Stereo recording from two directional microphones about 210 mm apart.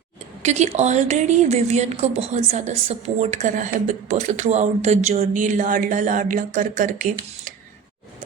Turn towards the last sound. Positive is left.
turn(degrees=-40)  # may be behind; listen again after turning